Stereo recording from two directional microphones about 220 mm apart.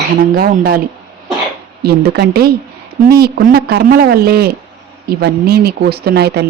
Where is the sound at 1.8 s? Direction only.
45° right (ahead or behind).